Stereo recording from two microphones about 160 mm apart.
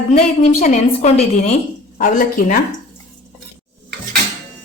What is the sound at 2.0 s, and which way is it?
Speech, 60° left (ahead or behind).